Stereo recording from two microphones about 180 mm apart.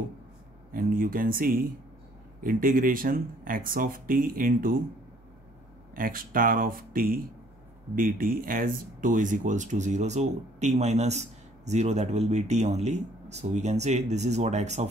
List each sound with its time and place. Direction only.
0.7 s speech: 50° right (ahead or behind)
5.9 s speech: 50° right (ahead or behind)